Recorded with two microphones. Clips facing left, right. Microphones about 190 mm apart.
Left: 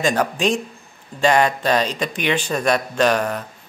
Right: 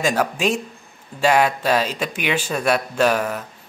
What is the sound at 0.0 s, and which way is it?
Speech, 5° right (ahead or behind).